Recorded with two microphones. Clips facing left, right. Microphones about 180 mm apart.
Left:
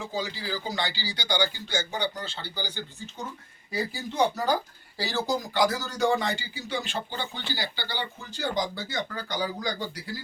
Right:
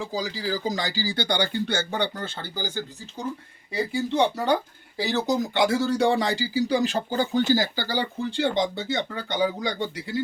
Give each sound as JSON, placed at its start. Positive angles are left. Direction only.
{"t": 0.0, "sound": "speech", "side_deg": -35}
{"t": 3.7, "sound": "speech", "side_deg": -30}